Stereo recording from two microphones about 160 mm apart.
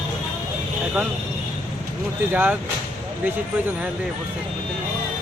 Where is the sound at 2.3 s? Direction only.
10° right (ahead or behind).